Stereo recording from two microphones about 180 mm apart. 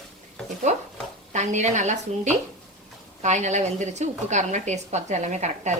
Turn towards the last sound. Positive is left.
turn(degrees=-40)  # may be behind; listen again after turning